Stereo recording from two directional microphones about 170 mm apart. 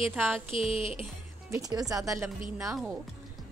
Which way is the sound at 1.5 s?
20° right (ahead or behind).